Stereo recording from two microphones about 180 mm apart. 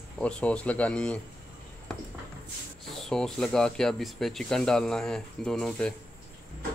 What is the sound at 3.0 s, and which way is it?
Speech, 5° left (ahead or behind).